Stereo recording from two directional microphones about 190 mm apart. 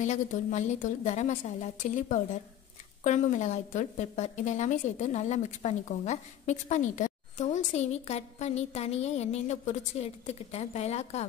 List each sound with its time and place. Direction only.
0.0 s a woman's voice: 40° left (ahead or behind)